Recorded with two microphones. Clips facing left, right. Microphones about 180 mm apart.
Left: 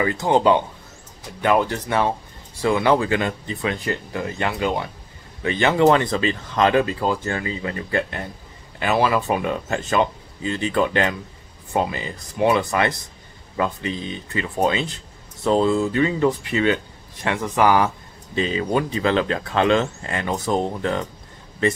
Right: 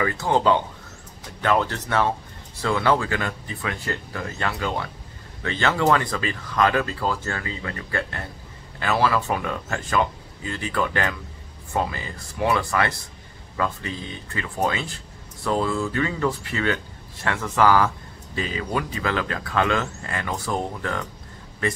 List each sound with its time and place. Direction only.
0.0 s speech: 20° left (ahead or behind)